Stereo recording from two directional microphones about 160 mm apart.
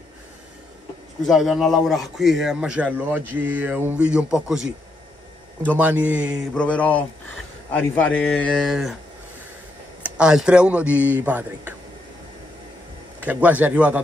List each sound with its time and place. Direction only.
1.2 s a man's voice: centre (ahead or behind)
5.8 s a man's voice: 10° right (ahead or behind)
6.5 s a man's voice: 10° left (ahead or behind)
10.0 s a man's voice: 5° right (ahead or behind)
13.2 s a man's voice: 10° right (ahead or behind)